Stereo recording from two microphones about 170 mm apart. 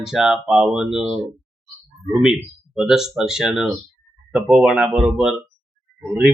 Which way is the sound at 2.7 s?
5° right (ahead or behind).